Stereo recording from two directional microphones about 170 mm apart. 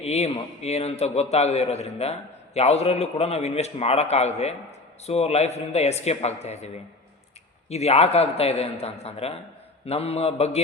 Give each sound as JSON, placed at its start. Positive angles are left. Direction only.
{"t": 0.0, "sound": "a man's voice", "side_deg": 40}
{"t": 7.7, "sound": "a man's voice", "side_deg": 40}